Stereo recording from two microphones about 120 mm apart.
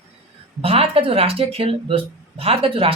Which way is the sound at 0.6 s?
55° right (ahead or behind).